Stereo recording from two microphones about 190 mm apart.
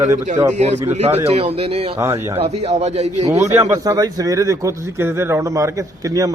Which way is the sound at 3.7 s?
20° right (ahead or behind).